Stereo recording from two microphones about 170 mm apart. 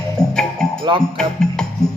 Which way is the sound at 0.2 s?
20° left (ahead or behind).